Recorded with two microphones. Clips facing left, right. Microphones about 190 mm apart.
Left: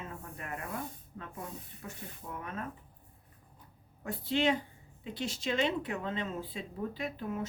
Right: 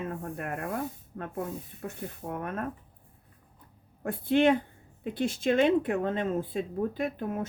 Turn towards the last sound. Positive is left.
turn(degrees=-50)  # may be behind; listen again after turning